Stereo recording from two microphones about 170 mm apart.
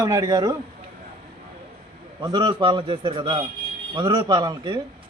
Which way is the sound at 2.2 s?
25° right (ahead or behind).